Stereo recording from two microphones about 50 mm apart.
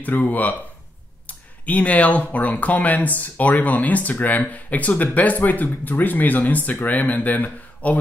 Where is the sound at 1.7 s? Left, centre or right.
Left.